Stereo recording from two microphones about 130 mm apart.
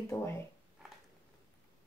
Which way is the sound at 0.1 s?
20° left (ahead or behind).